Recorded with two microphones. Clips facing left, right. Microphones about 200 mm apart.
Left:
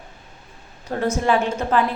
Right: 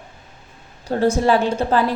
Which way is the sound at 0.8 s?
30° right (ahead or behind).